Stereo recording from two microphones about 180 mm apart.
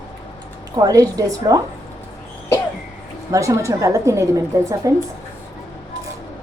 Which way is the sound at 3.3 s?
15° right (ahead or behind).